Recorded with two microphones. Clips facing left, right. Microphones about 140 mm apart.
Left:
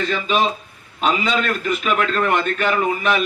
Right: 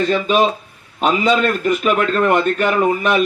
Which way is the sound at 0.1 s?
45° right (ahead or behind).